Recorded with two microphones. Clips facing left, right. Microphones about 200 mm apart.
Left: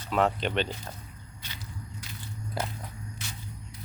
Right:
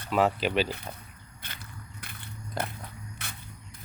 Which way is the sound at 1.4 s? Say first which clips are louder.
Left 1 dB; 55° right (ahead or behind).